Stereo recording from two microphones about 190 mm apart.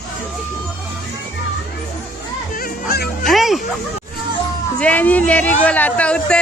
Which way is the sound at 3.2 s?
Centre (ahead or behind).